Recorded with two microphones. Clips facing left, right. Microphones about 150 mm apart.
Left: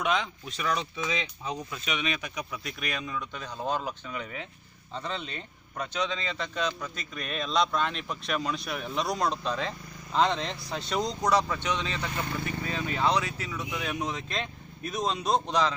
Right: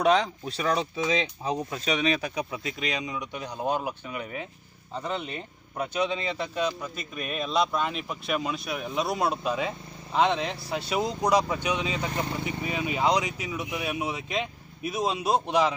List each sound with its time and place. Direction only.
0.0 s speech: 35° right (ahead or behind); by 15.7 s 10° right (ahead or behind)